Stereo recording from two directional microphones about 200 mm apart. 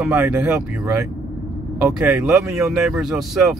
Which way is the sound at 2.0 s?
Centre (ahead or behind).